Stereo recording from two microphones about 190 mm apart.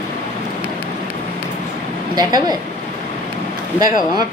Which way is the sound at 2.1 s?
20° right (ahead or behind).